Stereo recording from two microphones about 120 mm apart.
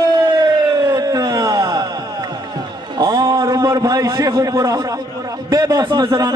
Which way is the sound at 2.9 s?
35° right (ahead or behind).